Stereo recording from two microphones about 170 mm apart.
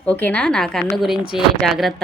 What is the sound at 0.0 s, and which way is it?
A woman's voice, 10° left (ahead or behind).